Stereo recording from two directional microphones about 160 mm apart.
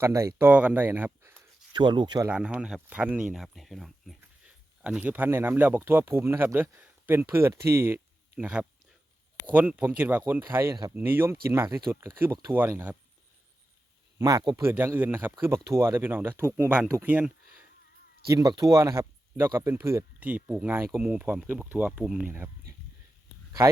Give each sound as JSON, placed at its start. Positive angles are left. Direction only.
{"t": 0.0, "sound": "speech", "side_deg": -20}
{"t": 1.7, "sound": "speech", "side_deg": -30}
{"t": 2.2, "sound": "speech", "side_deg": -5}
{"t": 14.2, "sound": "speech", "side_deg": -20}
{"t": 18.3, "sound": "speech", "side_deg": -25}
{"t": 22.3, "sound": "speech", "side_deg": -15}